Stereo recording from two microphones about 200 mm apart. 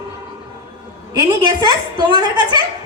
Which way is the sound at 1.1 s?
20° right (ahead or behind).